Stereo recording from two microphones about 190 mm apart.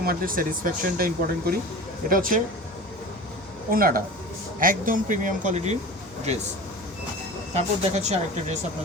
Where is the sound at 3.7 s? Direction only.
50° right (ahead or behind).